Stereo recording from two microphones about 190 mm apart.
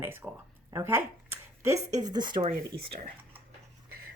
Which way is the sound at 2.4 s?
50° right (ahead or behind).